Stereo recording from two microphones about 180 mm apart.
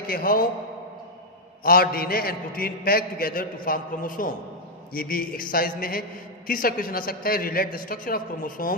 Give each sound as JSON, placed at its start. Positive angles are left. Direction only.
{"t": 0.1, "sound": "a man's voice", "side_deg": 55}
{"t": 1.6, "sound": "a man's voice", "side_deg": 55}